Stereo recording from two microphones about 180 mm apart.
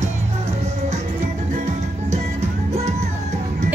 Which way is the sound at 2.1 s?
40° right (ahead or behind).